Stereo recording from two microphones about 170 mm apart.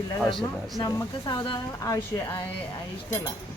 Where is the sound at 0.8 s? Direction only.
20° left (ahead or behind).